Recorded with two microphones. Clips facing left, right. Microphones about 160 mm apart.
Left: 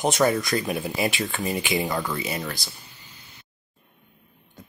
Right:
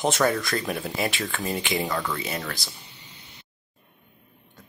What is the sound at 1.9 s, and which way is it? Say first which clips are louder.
Speech: left 1 dB; 20° left (ahead or behind).